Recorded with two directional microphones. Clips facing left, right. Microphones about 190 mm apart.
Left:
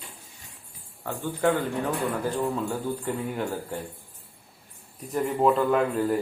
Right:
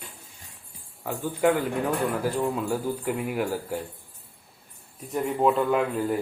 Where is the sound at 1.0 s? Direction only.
10° right (ahead or behind).